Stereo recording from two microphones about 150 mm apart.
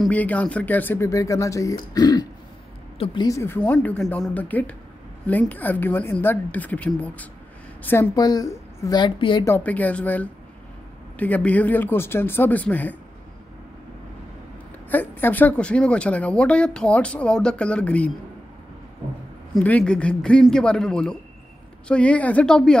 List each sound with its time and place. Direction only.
0.0 s speech: 10° left (ahead or behind); by 2.2 s 25° left (ahead or behind)
3.3 s a woman's voice: 20° left (ahead or behind)
8.2 s speech: 25° left (ahead or behind)
9.4 s speech: 15° left (ahead or behind)
14.9 s speech: 10° left (ahead or behind)
19.5 s a man's voice: 5° left (ahead or behind)